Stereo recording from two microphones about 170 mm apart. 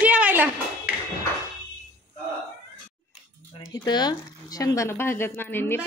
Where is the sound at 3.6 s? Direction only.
25° left (ahead or behind).